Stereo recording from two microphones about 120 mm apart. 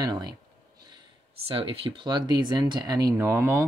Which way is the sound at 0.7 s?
35° right (ahead or behind).